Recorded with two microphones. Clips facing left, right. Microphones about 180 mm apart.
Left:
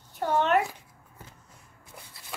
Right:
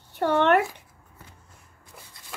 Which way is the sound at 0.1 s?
70° right (ahead or behind).